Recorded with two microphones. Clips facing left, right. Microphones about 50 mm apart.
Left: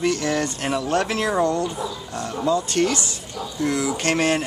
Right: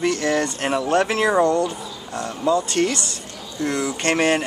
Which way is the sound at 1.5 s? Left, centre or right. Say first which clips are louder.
Right 2 dB; centre.